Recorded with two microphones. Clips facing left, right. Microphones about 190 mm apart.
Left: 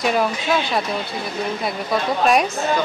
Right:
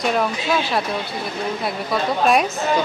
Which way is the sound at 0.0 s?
5° left (ahead or behind).